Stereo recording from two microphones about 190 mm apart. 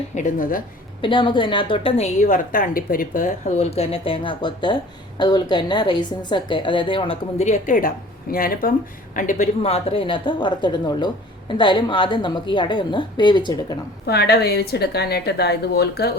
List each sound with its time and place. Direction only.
0.1 s speech: 40° left (ahead or behind)
1.0 s a woman's voice: 25° left (ahead or behind)
14.1 s a woman's voice: 60° left (ahead or behind)